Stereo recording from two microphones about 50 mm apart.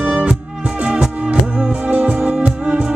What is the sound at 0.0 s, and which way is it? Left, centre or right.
Music, right.